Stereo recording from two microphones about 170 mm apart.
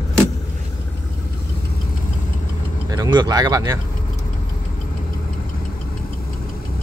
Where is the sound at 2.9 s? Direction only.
25° right (ahead or behind).